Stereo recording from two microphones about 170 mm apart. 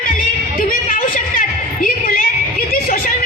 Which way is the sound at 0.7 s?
55° left (ahead or behind).